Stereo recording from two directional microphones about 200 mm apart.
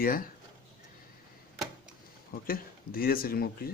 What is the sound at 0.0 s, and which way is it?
Speech, 45° left (ahead or behind).